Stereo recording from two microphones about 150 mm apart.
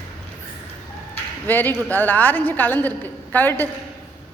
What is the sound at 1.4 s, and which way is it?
A woman's voice, 10° left (ahead or behind).